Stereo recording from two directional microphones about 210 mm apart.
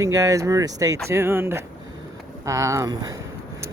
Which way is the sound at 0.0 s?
15° right (ahead or behind).